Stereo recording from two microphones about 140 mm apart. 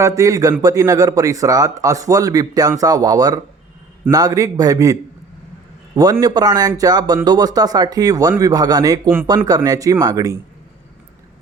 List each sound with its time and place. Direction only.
0.0 s a man's voice: 25° right (ahead or behind)
6.0 s a man's voice: 25° right (ahead or behind)